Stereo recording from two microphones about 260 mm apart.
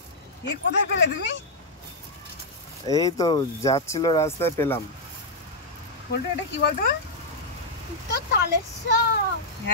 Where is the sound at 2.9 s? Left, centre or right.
Centre.